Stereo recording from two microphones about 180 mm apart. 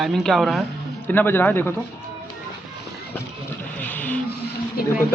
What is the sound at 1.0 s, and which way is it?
Speech, 10° left (ahead or behind).